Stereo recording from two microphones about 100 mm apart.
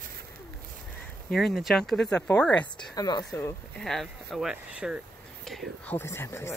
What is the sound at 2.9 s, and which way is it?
Speech, 40° left (ahead or behind).